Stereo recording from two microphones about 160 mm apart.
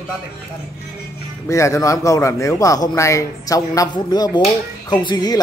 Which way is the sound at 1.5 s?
20° left (ahead or behind).